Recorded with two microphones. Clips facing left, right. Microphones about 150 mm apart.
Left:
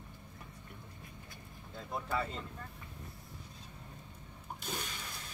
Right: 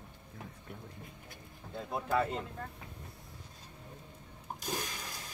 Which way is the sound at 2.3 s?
70° right (ahead or behind).